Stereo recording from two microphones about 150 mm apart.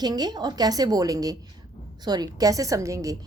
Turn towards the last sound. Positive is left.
turn(degrees=-25)  # may be behind; listen again after turning